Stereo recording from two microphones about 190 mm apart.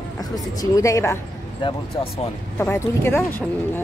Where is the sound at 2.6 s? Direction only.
15° left (ahead or behind).